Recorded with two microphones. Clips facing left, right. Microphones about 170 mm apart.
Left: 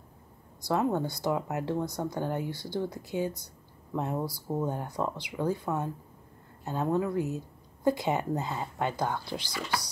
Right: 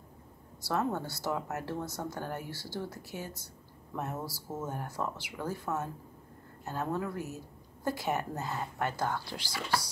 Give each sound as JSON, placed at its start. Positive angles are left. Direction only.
{"t": 0.6, "sound": "a woman's voice", "side_deg": 15}